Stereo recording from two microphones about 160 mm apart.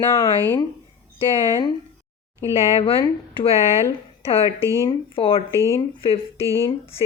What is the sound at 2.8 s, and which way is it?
Speech, 35° left (ahead or behind).